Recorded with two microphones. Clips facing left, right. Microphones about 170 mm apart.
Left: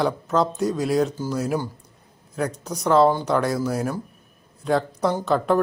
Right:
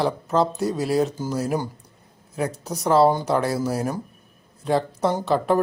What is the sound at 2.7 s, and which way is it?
A man's voice, 5° right (ahead or behind).